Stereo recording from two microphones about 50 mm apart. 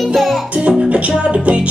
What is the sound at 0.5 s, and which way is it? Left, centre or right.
Music, right.